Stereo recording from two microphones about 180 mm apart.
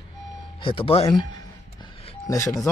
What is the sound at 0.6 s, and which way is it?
Speech, 30° left (ahead or behind).